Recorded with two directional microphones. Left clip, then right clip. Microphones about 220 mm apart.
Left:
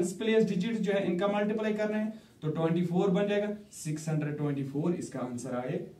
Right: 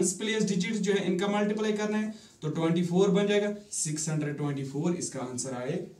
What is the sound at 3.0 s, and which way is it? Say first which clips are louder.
Speech: right 4 dB; 5° left (ahead or behind).